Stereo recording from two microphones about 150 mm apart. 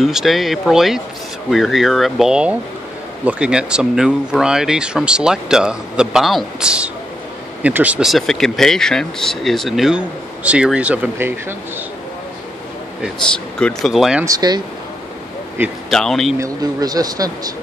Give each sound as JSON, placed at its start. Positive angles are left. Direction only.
{"t": 0.0, "sound": "speech", "side_deg": 0}
{"t": 13.6, "sound": "speech", "side_deg": 0}
{"t": 14.2, "sound": "speech", "side_deg": -25}
{"t": 15.9, "sound": "speech", "side_deg": 5}
{"t": 16.3, "sound": "speech", "side_deg": -25}